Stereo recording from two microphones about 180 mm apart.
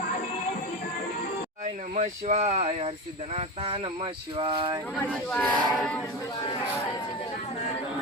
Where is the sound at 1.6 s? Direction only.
40° right (ahead or behind).